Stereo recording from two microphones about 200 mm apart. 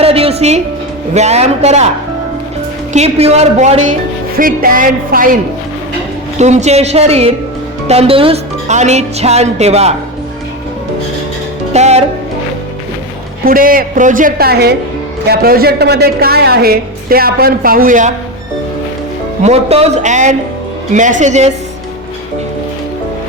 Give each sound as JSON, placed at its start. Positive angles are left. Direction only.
{"t": 0.0, "sound": "music", "side_deg": -30}
{"t": 1.1, "sound": "speech", "side_deg": -35}
{"t": 2.9, "sound": "a woman's voice", "side_deg": -30}
{"t": 6.4, "sound": "speech", "side_deg": -35}
{"t": 11.7, "sound": "speech", "side_deg": -35}
{"t": 13.4, "sound": "a woman's voice", "side_deg": -45}
{"t": 19.4, "sound": "speech", "side_deg": -35}